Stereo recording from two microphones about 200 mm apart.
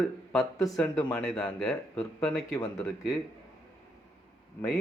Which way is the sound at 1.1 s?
5° left (ahead or behind).